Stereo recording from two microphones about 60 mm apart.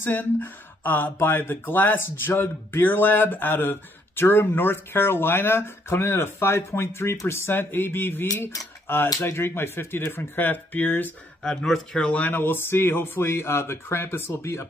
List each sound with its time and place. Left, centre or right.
0.0 s speech: left
11.4 s speech: centre
12.1 s speech: left